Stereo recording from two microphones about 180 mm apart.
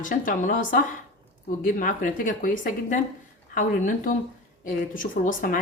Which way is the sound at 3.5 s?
50° left (ahead or behind).